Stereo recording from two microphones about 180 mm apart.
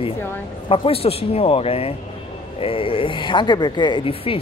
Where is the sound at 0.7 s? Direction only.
30° left (ahead or behind).